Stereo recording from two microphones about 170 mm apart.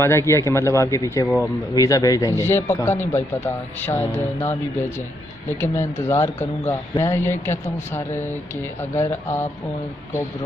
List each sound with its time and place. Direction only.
0.0 s speech: 15° left (ahead or behind)
5.6 s speech: 15° left (ahead or behind)